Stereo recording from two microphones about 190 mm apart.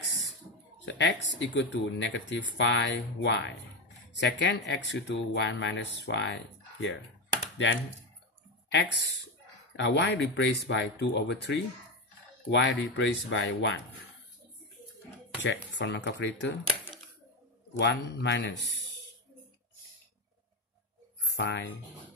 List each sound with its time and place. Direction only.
0.8 s speech: 70° left (ahead or behind)
9.8 s speech: 70° left (ahead or behind)
15.4 s speech: 65° left (ahead or behind)
17.7 s a man's voice: 65° left (ahead or behind)
21.4 s a man's voice: 65° left (ahead or behind)